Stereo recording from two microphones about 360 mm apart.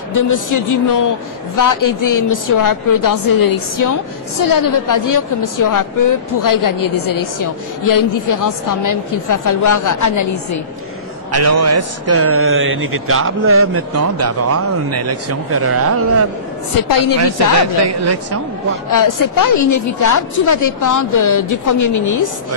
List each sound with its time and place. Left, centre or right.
0.1 s a woman's voice: left
11.3 s speech: right
16.7 s a woman's voice: left
17.7 s a woman's voice: right
18.7 s a woman's voice: left